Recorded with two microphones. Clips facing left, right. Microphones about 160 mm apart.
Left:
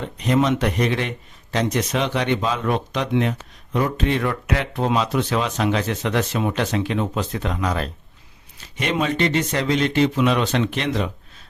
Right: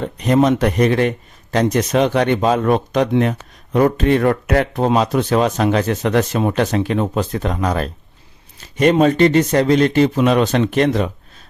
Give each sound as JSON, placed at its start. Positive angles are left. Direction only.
{"t": 0.0, "sound": "speech", "side_deg": -45}